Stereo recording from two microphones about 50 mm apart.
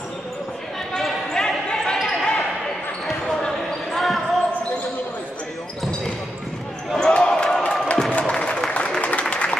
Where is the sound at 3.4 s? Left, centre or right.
Centre.